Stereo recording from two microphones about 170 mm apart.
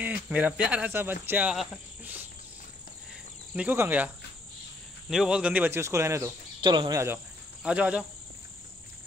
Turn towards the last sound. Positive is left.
turn(degrees=-5)  # may be behind; listen again after turning